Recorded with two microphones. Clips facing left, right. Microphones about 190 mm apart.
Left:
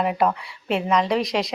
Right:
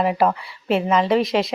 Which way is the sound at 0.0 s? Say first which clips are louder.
Right 2 dB; centre (ahead or behind).